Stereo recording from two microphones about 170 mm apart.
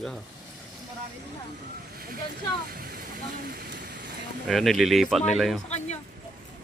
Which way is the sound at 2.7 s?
60° right (ahead or behind).